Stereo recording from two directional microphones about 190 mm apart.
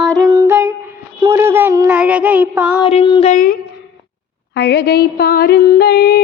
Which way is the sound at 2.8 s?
30° left (ahead or behind).